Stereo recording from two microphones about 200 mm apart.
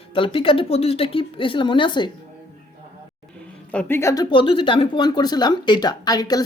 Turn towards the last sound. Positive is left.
turn(degrees=20)  # may be behind; listen again after turning